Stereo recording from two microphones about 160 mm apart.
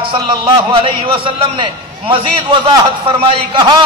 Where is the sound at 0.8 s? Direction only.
30° right (ahead or behind).